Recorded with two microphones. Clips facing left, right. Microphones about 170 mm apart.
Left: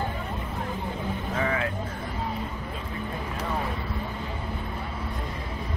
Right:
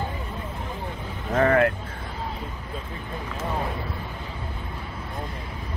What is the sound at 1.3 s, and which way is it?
Vehicle, 55° right (ahead or behind).